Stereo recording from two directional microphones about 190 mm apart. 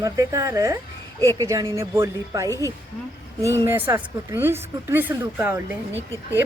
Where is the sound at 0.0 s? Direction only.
15° right (ahead or behind).